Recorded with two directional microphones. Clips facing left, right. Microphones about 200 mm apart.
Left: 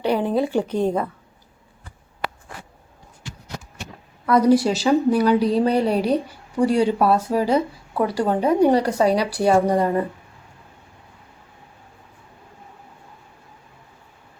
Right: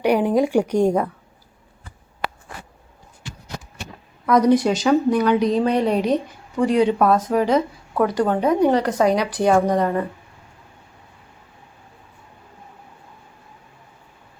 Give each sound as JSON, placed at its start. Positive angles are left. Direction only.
{"t": 0.0, "sound": "a woman's voice", "side_deg": -15}
{"t": 4.3, "sound": "speech", "side_deg": 5}
{"t": 5.2, "sound": "speech", "side_deg": 35}
{"t": 6.1, "sound": "speech", "side_deg": 10}